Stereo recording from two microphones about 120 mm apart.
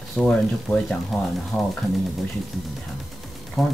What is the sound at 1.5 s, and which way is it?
Speech, 15° left (ahead or behind).